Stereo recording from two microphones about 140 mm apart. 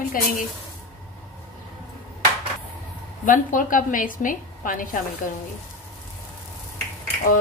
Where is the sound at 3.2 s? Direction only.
75° left (ahead or behind).